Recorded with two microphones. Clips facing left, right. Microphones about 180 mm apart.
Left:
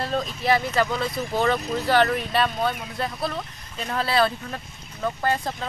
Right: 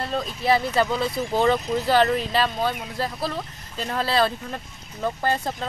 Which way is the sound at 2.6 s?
5° right (ahead or behind).